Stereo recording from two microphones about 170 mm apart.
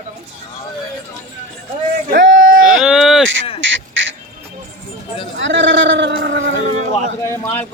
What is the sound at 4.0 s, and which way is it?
Duck, 90° right.